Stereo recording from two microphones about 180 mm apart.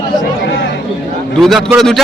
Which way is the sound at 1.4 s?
Centre (ahead or behind).